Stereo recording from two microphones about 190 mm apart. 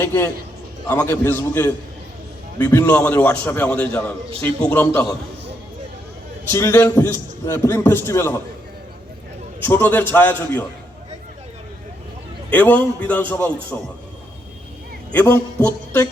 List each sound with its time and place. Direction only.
0.0 s a man's voice: 10° left (ahead or behind)
6.5 s a man's voice: 15° left (ahead or behind)
9.6 s a man's voice: 10° left (ahead or behind)
12.5 s a man's voice: 10° left (ahead or behind)
15.1 s a man's voice: 10° left (ahead or behind)